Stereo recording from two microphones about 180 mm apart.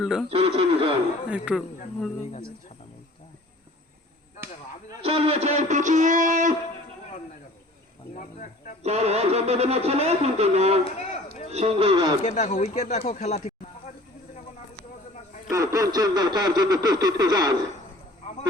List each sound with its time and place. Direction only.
0.0 s speech: centre (ahead or behind)
0.3 s music: 30° right (ahead or behind)
1.3 s speech: 5° right (ahead or behind)
5.0 s music: 35° right (ahead or behind)
8.1 s cricket: 45° left (ahead or behind)
8.8 s music: 35° right (ahead or behind)
10.8 s a sound: 35° left (ahead or behind)
11.5 s music: 35° right (ahead or behind)
12.2 s speech: 40° left (ahead or behind)
15.4 s speech: 20° right (ahead or behind)